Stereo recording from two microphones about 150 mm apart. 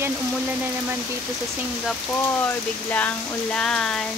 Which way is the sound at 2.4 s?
10° left (ahead or behind).